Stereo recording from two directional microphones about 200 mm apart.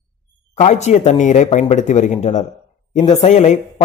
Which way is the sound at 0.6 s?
35° left (ahead or behind).